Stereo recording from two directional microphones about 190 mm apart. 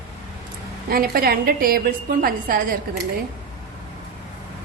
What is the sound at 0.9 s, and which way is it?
A woman's voice, 50° right (ahead or behind).